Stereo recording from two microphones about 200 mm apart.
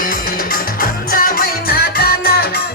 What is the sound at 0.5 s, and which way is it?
Music, 45° left (ahead or behind).